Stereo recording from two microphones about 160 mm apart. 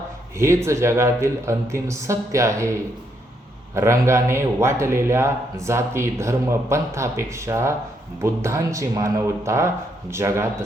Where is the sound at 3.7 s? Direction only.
15° right (ahead or behind).